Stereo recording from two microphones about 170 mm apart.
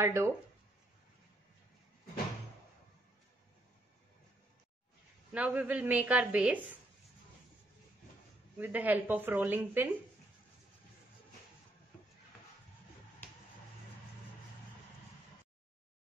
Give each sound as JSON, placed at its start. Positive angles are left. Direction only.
{"t": 0.0, "sound": "a woman's voice", "side_deg": -15}
{"t": 5.3, "sound": "a woman's voice", "side_deg": -10}
{"t": 8.5, "sound": "a woman's voice", "side_deg": -10}